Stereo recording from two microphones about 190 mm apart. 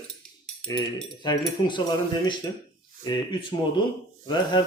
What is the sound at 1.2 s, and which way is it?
Speech, 25° left (ahead or behind).